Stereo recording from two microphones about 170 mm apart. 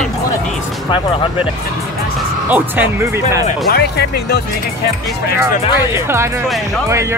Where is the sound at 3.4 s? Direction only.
65° left (ahead or behind).